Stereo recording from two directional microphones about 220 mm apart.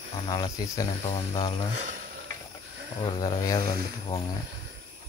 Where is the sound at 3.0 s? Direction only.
25° left (ahead or behind).